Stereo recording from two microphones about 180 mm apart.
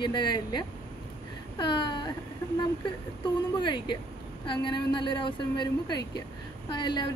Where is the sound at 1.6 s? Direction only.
25° left (ahead or behind).